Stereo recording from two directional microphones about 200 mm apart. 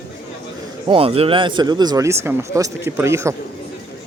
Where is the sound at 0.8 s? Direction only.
25° right (ahead or behind).